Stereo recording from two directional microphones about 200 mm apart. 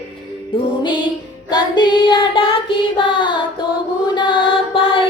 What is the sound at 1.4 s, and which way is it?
Child singing, 20° left (ahead or behind).